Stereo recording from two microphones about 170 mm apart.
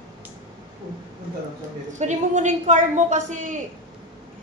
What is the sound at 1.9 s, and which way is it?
A woman's voice, 45° right (ahead or behind).